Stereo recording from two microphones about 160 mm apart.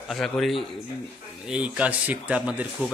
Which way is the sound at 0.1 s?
Centre (ahead or behind).